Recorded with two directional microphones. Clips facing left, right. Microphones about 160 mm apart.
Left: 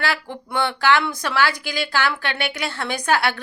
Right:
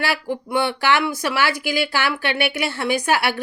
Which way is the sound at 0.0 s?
10° right (ahead or behind).